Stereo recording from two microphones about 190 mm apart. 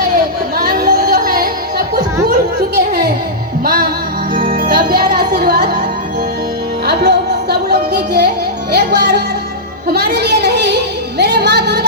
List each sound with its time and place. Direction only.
0.5 s music: 50° right (ahead or behind)
2.7 s a sound: 55° right (ahead or behind)
3.6 s music: 50° right (ahead or behind)
6.8 s music: 60° right (ahead or behind)
9.9 s a sound: 60° right (ahead or behind)
11.2 s music: 60° right (ahead or behind)